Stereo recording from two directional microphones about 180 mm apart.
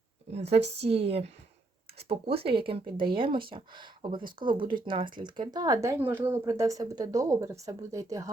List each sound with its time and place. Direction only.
0.3 s speech: 35° right (ahead or behind); by 8.3 s 20° right (ahead or behind)